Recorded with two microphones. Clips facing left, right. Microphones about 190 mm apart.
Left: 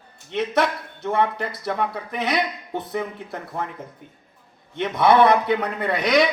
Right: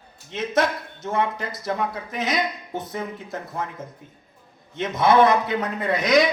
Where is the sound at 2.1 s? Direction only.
45° right (ahead or behind).